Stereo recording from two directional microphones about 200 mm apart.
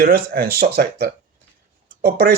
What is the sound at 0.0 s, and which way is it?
Speech, 45° right (ahead or behind).